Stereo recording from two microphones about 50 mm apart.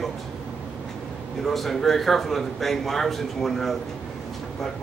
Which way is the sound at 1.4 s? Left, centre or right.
Centre.